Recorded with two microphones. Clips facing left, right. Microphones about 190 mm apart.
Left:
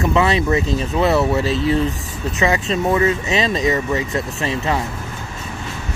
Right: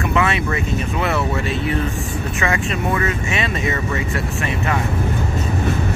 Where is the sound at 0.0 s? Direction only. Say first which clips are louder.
Left 3 dB; 25° left (ahead or behind).